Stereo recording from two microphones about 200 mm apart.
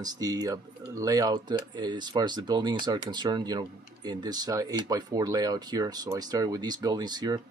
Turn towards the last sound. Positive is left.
turn(degrees=-20)  # may be behind; listen again after turning